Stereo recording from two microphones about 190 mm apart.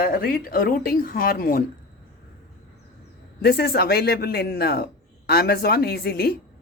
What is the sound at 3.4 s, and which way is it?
Speech, 55° left (ahead or behind).